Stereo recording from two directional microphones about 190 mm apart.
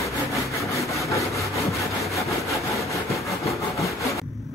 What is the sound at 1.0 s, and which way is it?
Sawing, 15° left (ahead or behind).